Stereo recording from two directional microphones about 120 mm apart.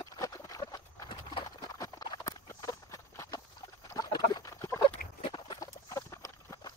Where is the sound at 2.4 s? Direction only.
25° left (ahead or behind).